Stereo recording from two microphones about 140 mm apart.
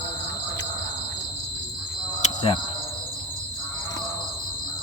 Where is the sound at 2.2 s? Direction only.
45° left (ahead or behind).